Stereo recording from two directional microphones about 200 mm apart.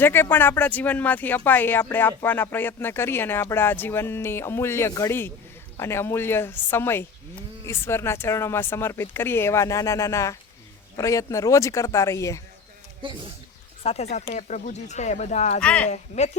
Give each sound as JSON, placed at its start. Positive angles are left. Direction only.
{"t": 0.0, "sound": "speech", "side_deg": 10}
{"t": 13.8, "sound": "speech", "side_deg": 30}
{"t": 15.6, "sound": "speech", "side_deg": 5}
{"t": 15.9, "sound": "speech", "side_deg": 35}